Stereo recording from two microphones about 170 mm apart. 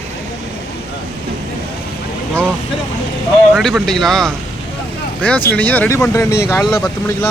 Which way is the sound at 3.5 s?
Centre (ahead or behind).